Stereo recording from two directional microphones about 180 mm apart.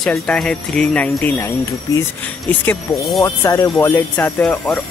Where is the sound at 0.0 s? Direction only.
5° left (ahead or behind).